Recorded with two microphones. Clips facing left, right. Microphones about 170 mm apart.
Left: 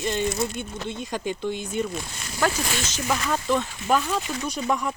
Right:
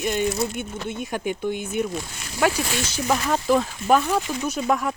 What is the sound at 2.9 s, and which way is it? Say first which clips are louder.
Speech: right 4 dB; 15° right (ahead or behind).